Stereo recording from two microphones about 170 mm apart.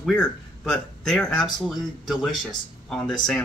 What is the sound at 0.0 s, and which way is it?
Speech, 5° left (ahead or behind).